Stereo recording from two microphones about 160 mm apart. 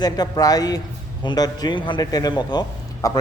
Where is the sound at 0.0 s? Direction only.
25° left (ahead or behind).